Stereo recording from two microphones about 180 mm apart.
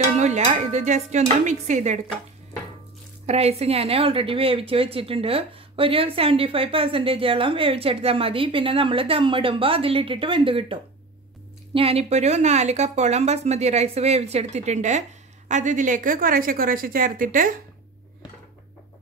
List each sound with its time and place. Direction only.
0.0 s a woman's voice: 40° right (ahead or behind)
3.3 s a woman's voice: 35° right (ahead or behind)